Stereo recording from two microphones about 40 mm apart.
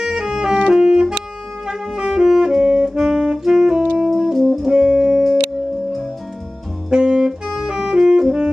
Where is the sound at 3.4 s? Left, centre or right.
Centre.